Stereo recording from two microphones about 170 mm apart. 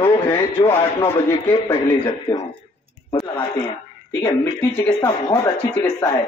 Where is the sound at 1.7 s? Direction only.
25° left (ahead or behind).